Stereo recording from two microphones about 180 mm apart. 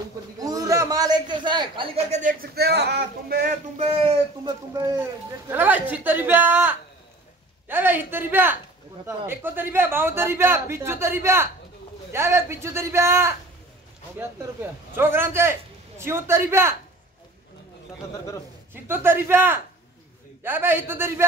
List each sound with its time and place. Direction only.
0.4 s a man's voice: 20° right (ahead or behind)
2.0 s speech: 40° right (ahead or behind)
2.4 s speech: 65° right (ahead or behind)
3.7 s speech: 35° right (ahead or behind)
5.5 s a man's voice: 10° right (ahead or behind)
18.7 s a man's voice: 10° right (ahead or behind)